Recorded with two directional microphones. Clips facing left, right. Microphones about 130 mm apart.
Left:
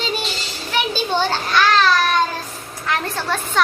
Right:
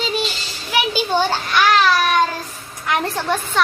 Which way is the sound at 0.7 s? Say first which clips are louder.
Right 2 dB; 10° right (ahead or behind).